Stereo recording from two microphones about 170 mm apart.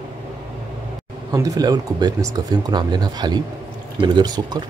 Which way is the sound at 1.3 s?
20° right (ahead or behind).